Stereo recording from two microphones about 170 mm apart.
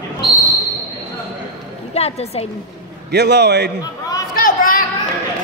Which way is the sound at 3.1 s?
80° right.